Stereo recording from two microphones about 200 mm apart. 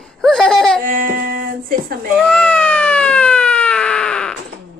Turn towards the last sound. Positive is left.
turn(degrees=5)  # may be behind; listen again after turning